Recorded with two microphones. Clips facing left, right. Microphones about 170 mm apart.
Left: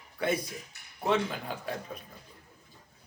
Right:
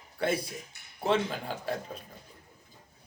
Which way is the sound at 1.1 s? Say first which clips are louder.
Right 1 dB; 45° right (ahead or behind).